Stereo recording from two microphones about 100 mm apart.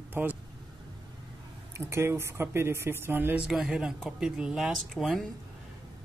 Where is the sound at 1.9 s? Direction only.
25° right (ahead or behind).